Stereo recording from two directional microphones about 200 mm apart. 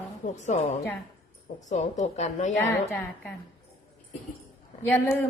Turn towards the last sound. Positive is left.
turn(degrees=10)  # may be behind; listen again after turning